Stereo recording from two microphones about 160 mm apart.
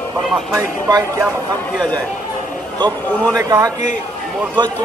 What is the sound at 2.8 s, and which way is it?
Speech, 20° right (ahead or behind).